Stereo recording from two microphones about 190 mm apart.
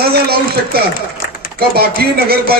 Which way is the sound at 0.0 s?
55° right (ahead or behind).